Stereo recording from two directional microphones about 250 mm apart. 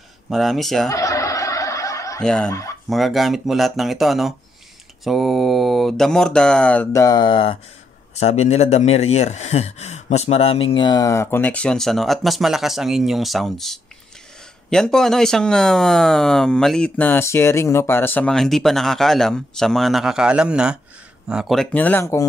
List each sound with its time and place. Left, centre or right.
0.3 s speech: centre
0.8 s snicker: centre
2.2 s speech: centre